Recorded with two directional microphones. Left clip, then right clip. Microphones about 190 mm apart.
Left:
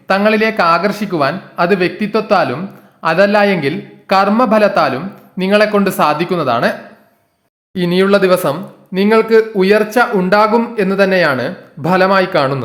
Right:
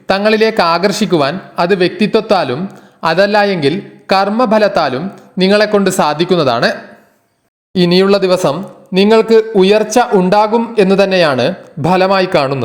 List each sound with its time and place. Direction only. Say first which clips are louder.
0.1 s speech: right 1 dB; 20° right (ahead or behind)